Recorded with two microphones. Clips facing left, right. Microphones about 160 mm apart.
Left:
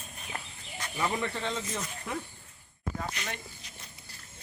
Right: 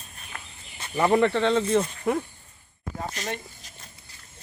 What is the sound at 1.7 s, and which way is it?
Speech, 55° right (ahead or behind).